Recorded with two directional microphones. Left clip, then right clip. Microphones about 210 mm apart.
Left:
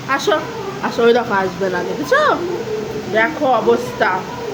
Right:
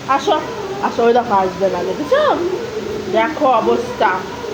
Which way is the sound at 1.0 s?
20° left (ahead or behind).